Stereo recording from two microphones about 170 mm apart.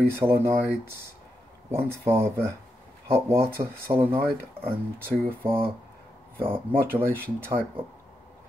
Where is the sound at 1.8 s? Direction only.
15° right (ahead or behind).